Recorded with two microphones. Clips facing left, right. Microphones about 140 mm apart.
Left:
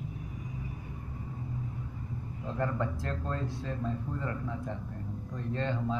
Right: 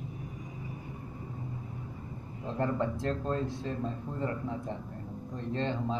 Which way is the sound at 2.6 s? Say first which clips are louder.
Right 2 dB; 25° right (ahead or behind).